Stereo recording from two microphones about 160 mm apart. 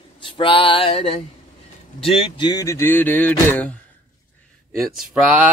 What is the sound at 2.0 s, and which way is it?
Speech, 35° left (ahead or behind).